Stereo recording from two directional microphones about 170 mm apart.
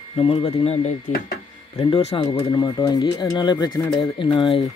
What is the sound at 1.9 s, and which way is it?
Speech, 35° left (ahead or behind).